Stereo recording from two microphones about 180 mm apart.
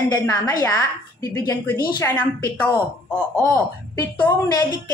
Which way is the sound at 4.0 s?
20° left (ahead or behind).